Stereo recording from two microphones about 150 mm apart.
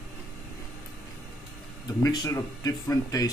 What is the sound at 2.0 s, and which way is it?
Speech, 25° left (ahead or behind).